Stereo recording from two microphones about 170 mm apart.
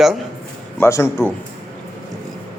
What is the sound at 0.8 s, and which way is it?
Speech, 15° left (ahead or behind).